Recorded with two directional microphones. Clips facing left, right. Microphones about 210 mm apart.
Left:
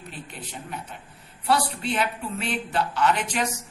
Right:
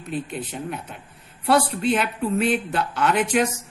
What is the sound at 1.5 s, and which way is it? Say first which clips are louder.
A woman's voice: right 5 dB; 50° right (ahead or behind).